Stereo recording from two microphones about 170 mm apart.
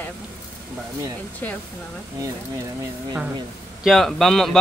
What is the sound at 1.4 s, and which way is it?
Speech, 10° left (ahead or behind).